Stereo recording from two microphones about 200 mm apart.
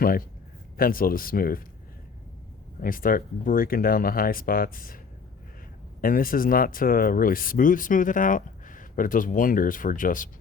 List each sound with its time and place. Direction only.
0.8 s speech: 45° left (ahead or behind)
2.8 s speech: 45° left (ahead or behind)
6.0 s speech: 45° left (ahead or behind)